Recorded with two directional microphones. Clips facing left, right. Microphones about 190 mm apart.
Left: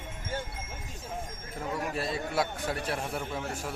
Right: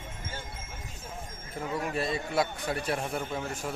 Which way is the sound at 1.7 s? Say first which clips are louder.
Right 2 dB; centre (ahead or behind).